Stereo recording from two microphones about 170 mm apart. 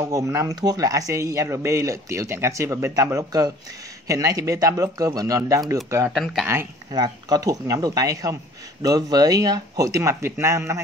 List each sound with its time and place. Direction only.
0.0 s a man's voice: 20° right (ahead or behind)
6.1 s speech: centre (ahead or behind)
6.4 s speech: 15° right (ahead or behind)